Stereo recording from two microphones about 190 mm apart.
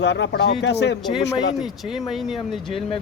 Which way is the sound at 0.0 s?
65° left (ahead or behind).